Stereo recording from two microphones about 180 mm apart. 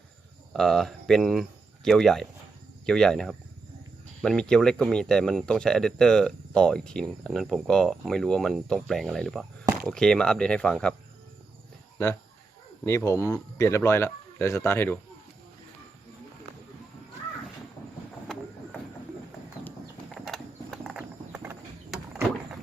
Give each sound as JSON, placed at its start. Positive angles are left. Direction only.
{"t": 0.5, "sound": "speech", "side_deg": 0}
{"t": 13.1, "sound": "speech", "side_deg": 15}
{"t": 19.6, "sound": "horse", "side_deg": 0}
{"t": 21.8, "sound": "vehicle", "side_deg": -5}